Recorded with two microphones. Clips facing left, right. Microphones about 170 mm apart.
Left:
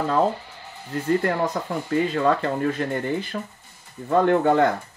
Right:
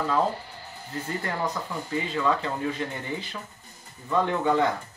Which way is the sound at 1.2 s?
55° left (ahead or behind).